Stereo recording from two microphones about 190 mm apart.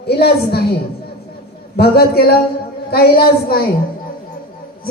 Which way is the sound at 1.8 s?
55° left (ahead or behind).